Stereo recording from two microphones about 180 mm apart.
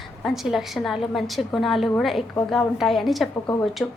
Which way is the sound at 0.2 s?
Centre (ahead or behind).